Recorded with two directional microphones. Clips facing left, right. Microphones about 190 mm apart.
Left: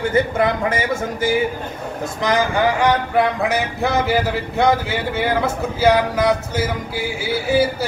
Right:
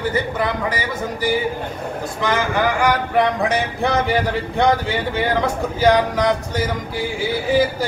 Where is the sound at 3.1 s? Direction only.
5° left (ahead or behind).